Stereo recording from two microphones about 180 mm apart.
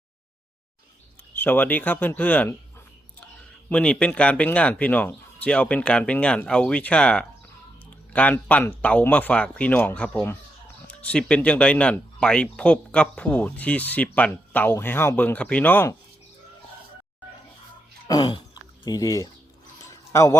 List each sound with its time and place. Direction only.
1.4 s speech: 10° left (ahead or behind)
3.7 s speech: 5° left (ahead or behind)
18.1 s speech: 25° left (ahead or behind)
19.9 s a sound: 15° left (ahead or behind)